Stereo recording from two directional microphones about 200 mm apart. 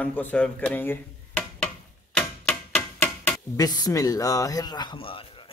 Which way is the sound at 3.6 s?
20° left (ahead or behind).